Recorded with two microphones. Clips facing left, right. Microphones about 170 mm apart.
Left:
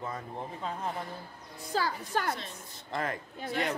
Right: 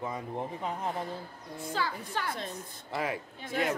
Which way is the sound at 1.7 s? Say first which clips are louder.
Left 3 dB; 40° left (ahead or behind).